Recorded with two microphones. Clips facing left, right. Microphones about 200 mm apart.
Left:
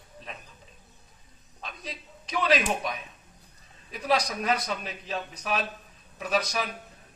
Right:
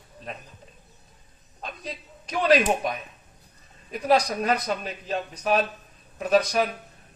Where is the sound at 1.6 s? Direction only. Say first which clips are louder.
Right 4 dB; 50° right (ahead or behind).